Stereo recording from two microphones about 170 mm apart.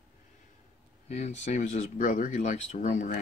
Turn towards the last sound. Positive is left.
turn(degrees=45)  # may be behind; listen again after turning